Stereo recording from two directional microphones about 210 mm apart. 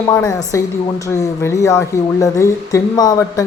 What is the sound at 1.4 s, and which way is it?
Speech, 15° left (ahead or behind).